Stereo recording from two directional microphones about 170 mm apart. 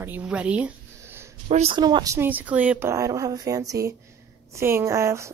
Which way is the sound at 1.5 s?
40° right (ahead or behind).